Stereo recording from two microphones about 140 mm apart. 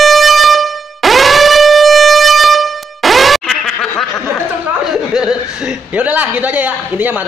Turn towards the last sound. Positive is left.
turn(degrees=-10)  # may be behind; listen again after turning